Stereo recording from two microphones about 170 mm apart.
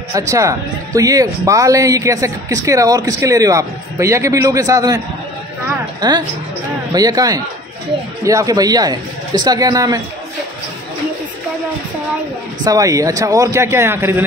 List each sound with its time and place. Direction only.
0.3 s speech: 20° right (ahead or behind)
12.6 s speech: 20° right (ahead or behind)